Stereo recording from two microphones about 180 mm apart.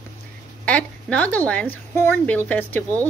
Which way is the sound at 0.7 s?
5° left (ahead or behind).